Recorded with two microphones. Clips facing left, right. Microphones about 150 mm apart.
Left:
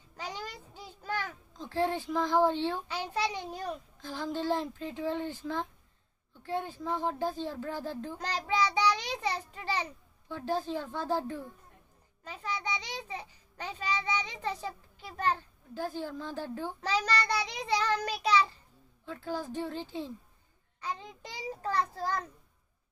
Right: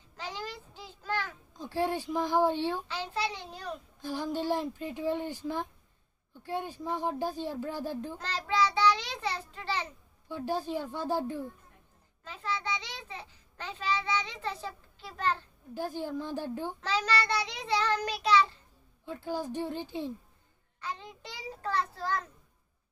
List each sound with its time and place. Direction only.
1.6 s speech: 15° right (ahead or behind)
2.9 s a child's voice: 15° left (ahead or behind)
4.0 s speech: 15° right (ahead or behind)
8.2 s child singing: 15° left (ahead or behind)
10.2 s speech: 15° right (ahead or behind)
12.3 s a child's voice: 15° left (ahead or behind)
15.7 s speech: 15° right (ahead or behind)
16.8 s a child's voice: 10° left (ahead or behind)
19.0 s speech: 15° right (ahead or behind)
20.8 s a child's voice: 10° left (ahead or behind)